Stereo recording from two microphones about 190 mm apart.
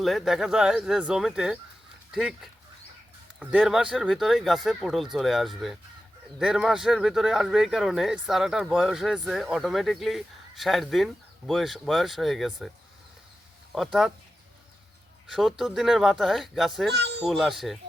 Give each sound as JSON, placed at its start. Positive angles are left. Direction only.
{"t": 0.0, "sound": "speech", "side_deg": 0}
{"t": 13.7, "sound": "speech", "side_deg": 0}
{"t": 15.3, "sound": "speech", "side_deg": 0}
{"t": 16.9, "sound": "a child's voice", "side_deg": -60}
{"t": 17.2, "sound": "speech", "side_deg": 0}